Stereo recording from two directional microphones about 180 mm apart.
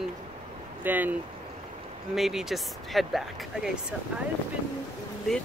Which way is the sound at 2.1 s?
Centre (ahead or behind).